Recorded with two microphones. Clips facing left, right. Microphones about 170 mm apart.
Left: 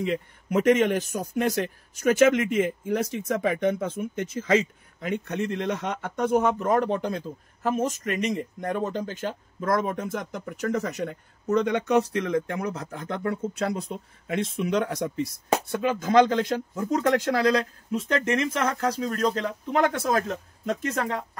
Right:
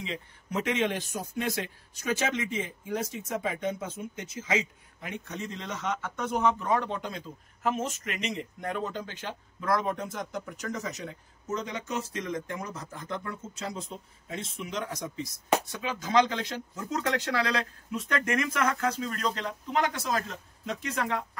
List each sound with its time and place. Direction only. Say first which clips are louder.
0.0 s speech: left 10 dB; 55° left (ahead or behind)
2.9 s speech: left 6 dB; 65° left (ahead or behind); by 17.6 s 45° left (ahead or behind)
17.9 s speech: left 4 dB; 30° left (ahead or behind); by 21.2 s 45° left (ahead or behind)